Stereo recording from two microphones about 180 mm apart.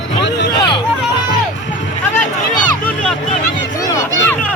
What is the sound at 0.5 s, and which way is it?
Hubbub, 25° left (ahead or behind).